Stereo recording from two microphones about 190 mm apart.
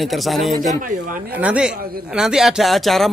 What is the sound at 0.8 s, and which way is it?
Speech, 45° right (ahead or behind).